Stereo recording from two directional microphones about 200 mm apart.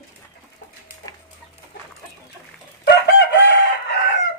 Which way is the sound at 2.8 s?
60° left (ahead or behind).